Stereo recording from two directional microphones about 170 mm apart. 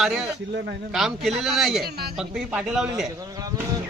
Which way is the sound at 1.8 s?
70° right (ahead or behind).